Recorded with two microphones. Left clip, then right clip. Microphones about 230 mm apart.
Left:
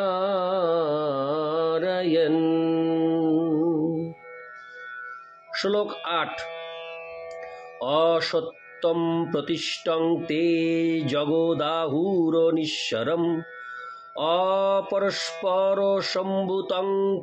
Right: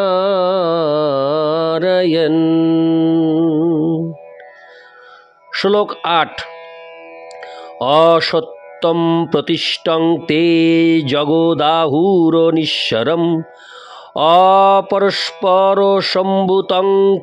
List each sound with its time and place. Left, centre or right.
0.0 s carnatic music: right
5.5 s music: right